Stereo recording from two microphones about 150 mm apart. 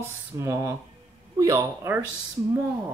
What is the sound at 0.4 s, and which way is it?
Speech, 15° right (ahead or behind).